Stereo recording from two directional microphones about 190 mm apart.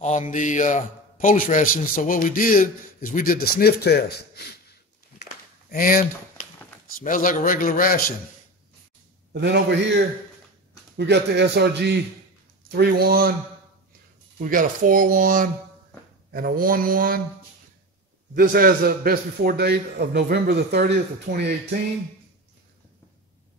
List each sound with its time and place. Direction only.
0.0 s a man's voice: 40° left (ahead or behind); by 4.5 s 60° left (ahead or behind)
5.7 s a man's voice: 50° left (ahead or behind)
9.3 s a man's voice: 65° right (ahead or behind)
14.4 s speech: 45° right (ahead or behind)
18.3 s a man's voice: 50° right (ahead or behind)